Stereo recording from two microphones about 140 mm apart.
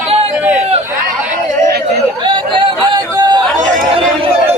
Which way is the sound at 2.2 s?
35° right (ahead or behind).